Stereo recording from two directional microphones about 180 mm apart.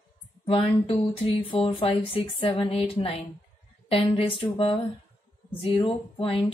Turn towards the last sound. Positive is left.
turn(degrees=30)  # may be behind; listen again after turning